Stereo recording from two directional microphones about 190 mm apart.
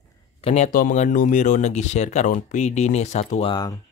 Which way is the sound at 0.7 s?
45° left (ahead or behind).